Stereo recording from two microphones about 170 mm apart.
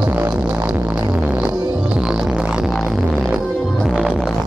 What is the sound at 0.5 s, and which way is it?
Music, 25° right (ahead or behind).